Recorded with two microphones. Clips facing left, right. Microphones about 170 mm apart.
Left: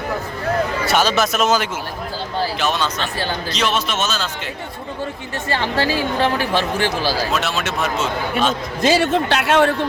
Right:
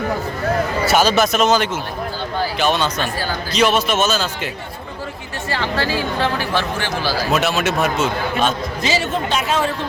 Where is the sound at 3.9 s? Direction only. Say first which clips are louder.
Right 4 dB; 40° right (ahead or behind).